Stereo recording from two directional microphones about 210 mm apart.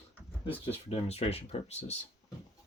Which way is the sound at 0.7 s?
30° left (ahead or behind).